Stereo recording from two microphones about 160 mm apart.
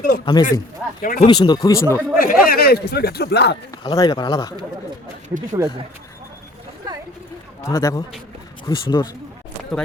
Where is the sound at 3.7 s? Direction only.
25° left (ahead or behind).